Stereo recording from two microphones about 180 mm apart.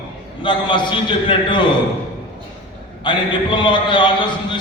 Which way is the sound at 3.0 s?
25° left (ahead or behind).